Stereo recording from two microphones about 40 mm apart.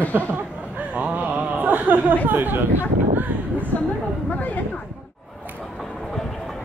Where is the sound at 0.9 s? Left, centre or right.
Right.